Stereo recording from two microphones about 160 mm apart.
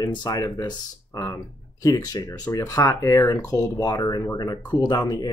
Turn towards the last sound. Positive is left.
turn(degrees=20)  # may be behind; listen again after turning